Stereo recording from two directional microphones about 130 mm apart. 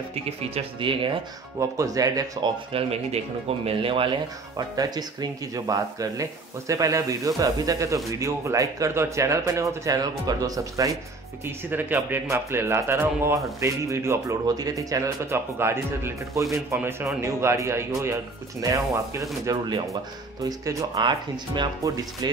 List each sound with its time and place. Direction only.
0.1 s speech: 50° right (ahead or behind)
1.6 s a man's voice: 25° right (ahead or behind)
2.7 s speech: 50° right (ahead or behind)
4.6 s a man's voice: 30° right (ahead or behind)
11.4 s a man's voice: 15° right (ahead or behind)